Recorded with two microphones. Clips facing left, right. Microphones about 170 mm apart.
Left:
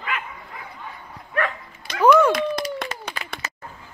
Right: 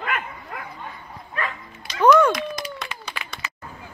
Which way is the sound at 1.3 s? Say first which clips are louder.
Left 5 dB; 65° left (ahead or behind).